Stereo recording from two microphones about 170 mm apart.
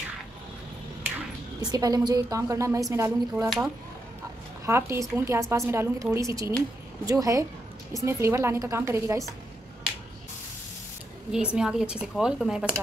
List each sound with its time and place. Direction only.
1.6 s a woman's voice: 20° right (ahead or behind)
3.4 s speech: centre (ahead or behind)
4.6 s a woman's voice: 15° right (ahead or behind)
11.3 s speech: 5° right (ahead or behind)